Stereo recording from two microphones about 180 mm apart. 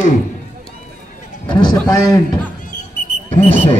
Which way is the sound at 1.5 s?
20° left (ahead or behind).